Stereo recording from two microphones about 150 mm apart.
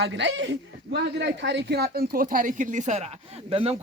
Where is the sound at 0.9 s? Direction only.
90° right; by 3.0 s 50° right (ahead or behind).